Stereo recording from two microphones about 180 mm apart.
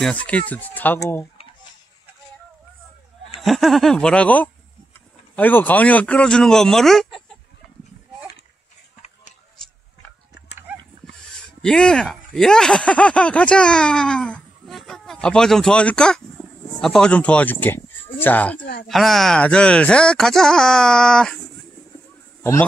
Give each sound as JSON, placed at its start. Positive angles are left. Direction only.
{"t": 0.0, "sound": "speech", "side_deg": 5}
{"t": 3.3, "sound": "speech", "side_deg": 0}
{"t": 10.7, "sound": "a sound", "side_deg": -10}
{"t": 11.6, "sound": "speech", "side_deg": 5}
{"t": 16.4, "sound": "a sound", "side_deg": 0}
{"t": 16.8, "sound": "speech", "side_deg": 5}